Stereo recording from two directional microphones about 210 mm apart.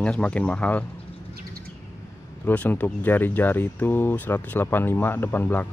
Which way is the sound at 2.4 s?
10° left (ahead or behind).